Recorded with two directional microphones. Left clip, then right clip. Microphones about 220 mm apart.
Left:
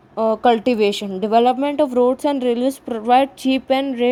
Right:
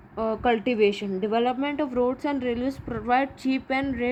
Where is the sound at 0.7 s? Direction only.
10° left (ahead or behind).